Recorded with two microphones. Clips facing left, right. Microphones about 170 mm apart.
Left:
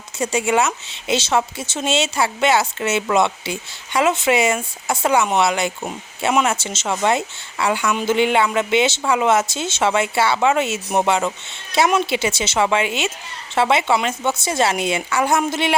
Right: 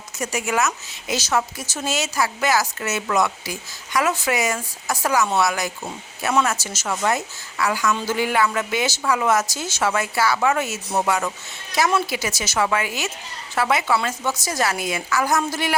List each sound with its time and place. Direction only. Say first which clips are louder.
0.2 s a woman's voice: left 4 dB; 30° left (ahead or behind)